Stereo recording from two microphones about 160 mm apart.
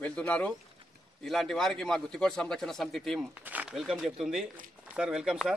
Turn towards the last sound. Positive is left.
turn(degrees=-5)  # may be behind; listen again after turning